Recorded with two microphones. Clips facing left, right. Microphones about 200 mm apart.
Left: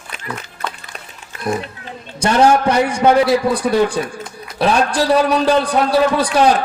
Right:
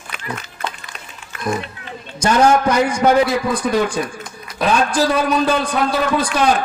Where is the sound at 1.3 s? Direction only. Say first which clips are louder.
Left 1 dB; 35° left (ahead or behind).